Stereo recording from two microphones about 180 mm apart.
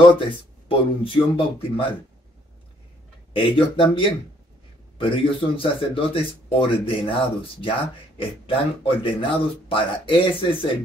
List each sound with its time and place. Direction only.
0.3 s speech: 30° left (ahead or behind)
3.3 s speech: 30° left (ahead or behind)